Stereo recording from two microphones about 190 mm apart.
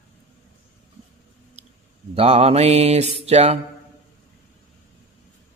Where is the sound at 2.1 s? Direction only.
30° right (ahead or behind).